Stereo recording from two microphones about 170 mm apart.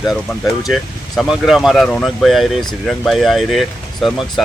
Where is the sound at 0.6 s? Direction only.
Centre (ahead or behind).